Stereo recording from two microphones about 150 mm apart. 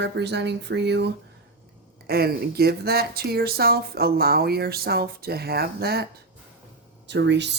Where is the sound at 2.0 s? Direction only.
90° right.